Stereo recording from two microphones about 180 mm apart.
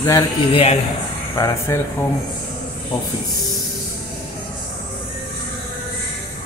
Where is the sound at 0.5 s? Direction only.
35° left (ahead or behind).